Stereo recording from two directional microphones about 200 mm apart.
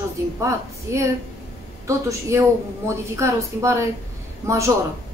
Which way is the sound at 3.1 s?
15° right (ahead or behind).